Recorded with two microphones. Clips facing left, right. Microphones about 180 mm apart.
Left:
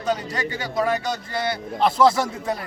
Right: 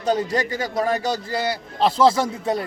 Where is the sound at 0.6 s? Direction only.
35° right (ahead or behind).